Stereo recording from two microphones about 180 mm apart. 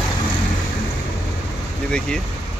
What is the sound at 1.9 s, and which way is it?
Speech, 5° left (ahead or behind).